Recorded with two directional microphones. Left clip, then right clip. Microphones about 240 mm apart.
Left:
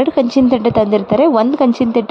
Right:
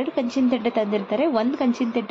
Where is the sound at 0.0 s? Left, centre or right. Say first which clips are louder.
Left 11 dB; left.